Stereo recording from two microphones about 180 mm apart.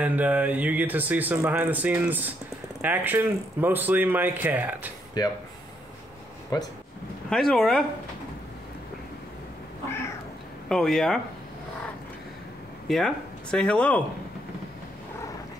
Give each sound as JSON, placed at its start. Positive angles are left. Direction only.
{"t": 0.0, "sound": "speech", "side_deg": -10}
{"t": 5.2, "sound": "speech", "side_deg": 20}
{"t": 6.5, "sound": "speech", "side_deg": 20}
{"t": 7.2, "sound": "speech", "side_deg": 5}
{"t": 10.7, "sound": "speech", "side_deg": 0}
{"t": 12.8, "sound": "speech", "side_deg": 0}